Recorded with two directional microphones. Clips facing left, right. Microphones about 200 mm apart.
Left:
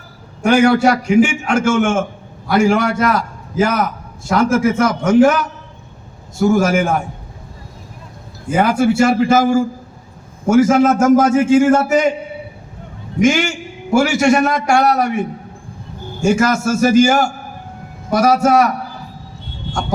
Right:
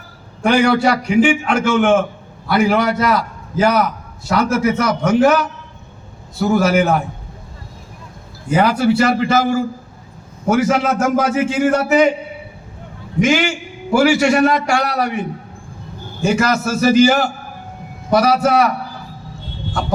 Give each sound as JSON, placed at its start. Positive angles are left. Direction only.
{"t": 0.4, "sound": "a man's voice", "side_deg": 45}
{"t": 8.4, "sound": "a man's voice", "side_deg": 50}
{"t": 13.9, "sound": "a man's voice", "side_deg": 45}
{"t": 16.2, "sound": "a man's voice", "side_deg": 45}